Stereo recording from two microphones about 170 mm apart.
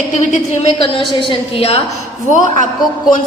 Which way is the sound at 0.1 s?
45° left (ahead or behind).